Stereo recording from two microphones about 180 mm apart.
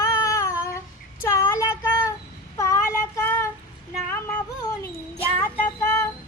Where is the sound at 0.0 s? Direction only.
15° left (ahead or behind).